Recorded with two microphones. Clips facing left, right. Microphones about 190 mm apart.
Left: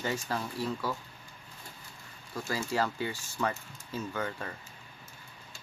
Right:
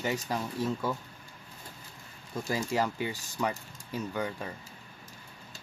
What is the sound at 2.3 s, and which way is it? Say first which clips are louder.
Speech: right 2 dB; 15° right (ahead or behind).